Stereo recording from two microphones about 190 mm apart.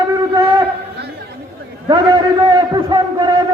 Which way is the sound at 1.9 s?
20° right (ahead or behind).